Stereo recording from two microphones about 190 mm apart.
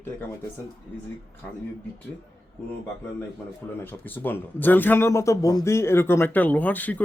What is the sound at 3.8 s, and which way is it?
Speech, 10° left (ahead or behind).